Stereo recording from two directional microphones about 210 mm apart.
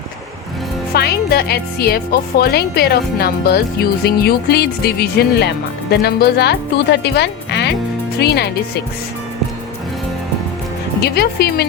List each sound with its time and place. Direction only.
0.9 s speech: 50° left (ahead or behind)
11.0 s speech: 50° left (ahead or behind)